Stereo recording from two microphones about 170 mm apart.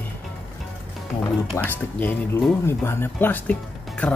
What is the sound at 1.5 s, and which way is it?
Speech, 10° left (ahead or behind).